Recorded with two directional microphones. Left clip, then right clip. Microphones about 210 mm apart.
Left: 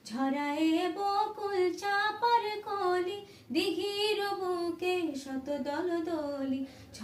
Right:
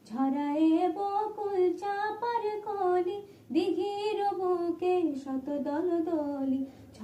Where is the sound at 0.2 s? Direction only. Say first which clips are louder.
Right 3 dB; 15° left (ahead or behind).